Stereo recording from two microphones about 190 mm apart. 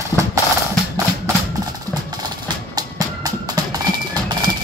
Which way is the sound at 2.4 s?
20° right (ahead or behind).